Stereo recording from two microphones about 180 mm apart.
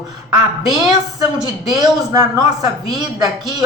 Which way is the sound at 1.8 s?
20° right (ahead or behind).